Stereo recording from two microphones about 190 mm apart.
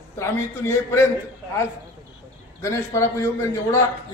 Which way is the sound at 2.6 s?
15° left (ahead or behind).